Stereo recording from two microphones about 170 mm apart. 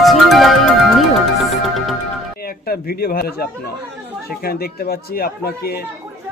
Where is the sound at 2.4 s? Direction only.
60° left (ahead or behind).